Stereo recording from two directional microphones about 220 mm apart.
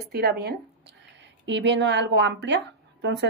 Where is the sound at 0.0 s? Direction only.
45° right (ahead or behind).